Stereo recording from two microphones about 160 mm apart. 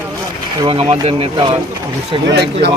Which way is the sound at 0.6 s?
35° right (ahead or behind).